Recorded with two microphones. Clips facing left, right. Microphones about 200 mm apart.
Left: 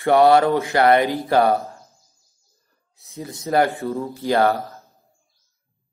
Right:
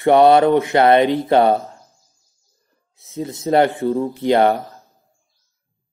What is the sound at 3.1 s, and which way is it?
Mantra, 25° right (ahead or behind).